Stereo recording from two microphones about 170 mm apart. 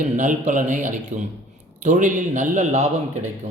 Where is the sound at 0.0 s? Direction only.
50° right (ahead or behind).